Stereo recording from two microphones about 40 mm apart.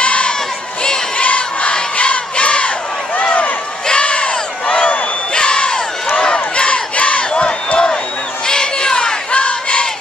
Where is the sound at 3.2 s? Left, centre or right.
Left.